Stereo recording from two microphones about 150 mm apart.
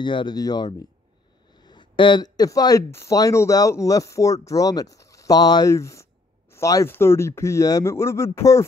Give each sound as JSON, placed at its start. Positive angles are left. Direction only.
{"t": 0.0, "sound": "speech", "side_deg": 30}